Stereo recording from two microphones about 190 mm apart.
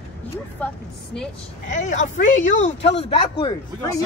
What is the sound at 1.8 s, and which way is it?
Speech, 40° left (ahead or behind).